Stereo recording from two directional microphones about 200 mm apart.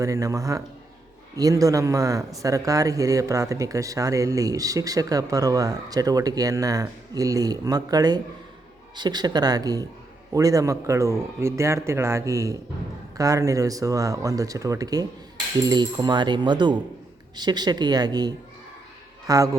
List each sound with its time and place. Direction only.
0.0 s speech: 15° right (ahead or behind)